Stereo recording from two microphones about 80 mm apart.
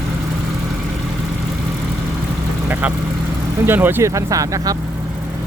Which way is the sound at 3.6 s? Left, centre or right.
Right.